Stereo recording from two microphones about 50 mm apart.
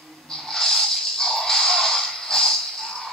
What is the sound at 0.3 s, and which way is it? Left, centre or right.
Music, centre.